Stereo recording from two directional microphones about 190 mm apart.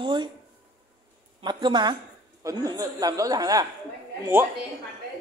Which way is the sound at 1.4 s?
25° right (ahead or behind).